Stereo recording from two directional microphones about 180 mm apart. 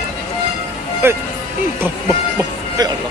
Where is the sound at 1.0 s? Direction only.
15° right (ahead or behind).